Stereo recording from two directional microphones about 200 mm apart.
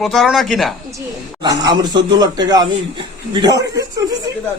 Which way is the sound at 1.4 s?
20° right (ahead or behind).